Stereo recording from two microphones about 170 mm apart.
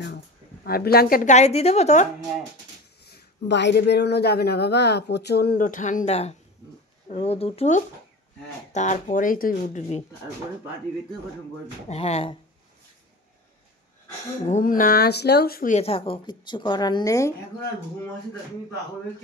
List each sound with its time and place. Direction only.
0.7 s speech: 60° left (ahead or behind)
1.3 s a woman's voice: 40° left (ahead or behind)
3.0 s a woman's voice: 80° left; by 10.0 s 45° left (ahead or behind)
11.9 s a woman's voice: 35° left (ahead or behind)
14.5 s speech: 55° left (ahead or behind)
15.7 s a woman's voice: 35° left (ahead or behind)